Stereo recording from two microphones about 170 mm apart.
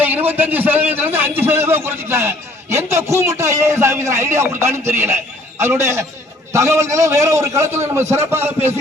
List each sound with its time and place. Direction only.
0.0 s a man's voice: 10° right (ahead or behind)